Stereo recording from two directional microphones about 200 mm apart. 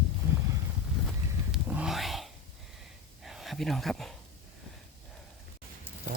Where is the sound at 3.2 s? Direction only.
Centre (ahead or behind).